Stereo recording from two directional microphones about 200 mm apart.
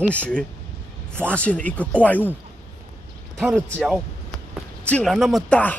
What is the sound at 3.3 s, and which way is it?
Speech, 5° right (ahead or behind).